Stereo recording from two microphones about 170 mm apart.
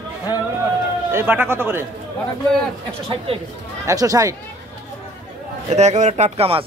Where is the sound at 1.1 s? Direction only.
10° right (ahead or behind).